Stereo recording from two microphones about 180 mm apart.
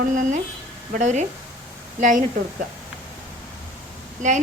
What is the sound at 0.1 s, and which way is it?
A woman's voice, 45° right (ahead or behind).